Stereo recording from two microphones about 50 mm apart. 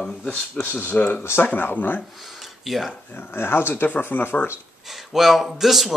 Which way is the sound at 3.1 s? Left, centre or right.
Left.